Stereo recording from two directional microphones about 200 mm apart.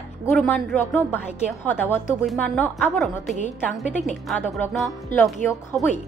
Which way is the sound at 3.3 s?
35° left (ahead or behind).